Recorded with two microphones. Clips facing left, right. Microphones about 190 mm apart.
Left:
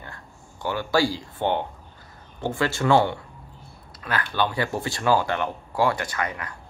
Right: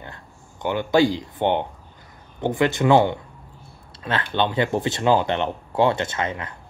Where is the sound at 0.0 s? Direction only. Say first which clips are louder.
Right 2 dB; 20° right (ahead or behind).